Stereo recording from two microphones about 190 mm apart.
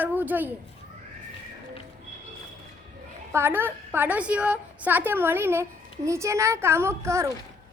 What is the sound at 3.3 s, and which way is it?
A woman's voice, 10° right (ahead or behind).